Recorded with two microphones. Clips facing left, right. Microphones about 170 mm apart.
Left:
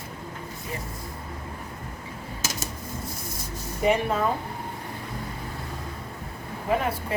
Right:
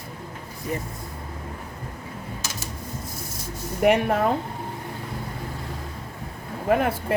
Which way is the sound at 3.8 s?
65° right (ahead or behind).